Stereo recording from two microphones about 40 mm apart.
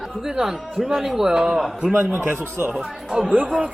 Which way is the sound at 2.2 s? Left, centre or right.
Right.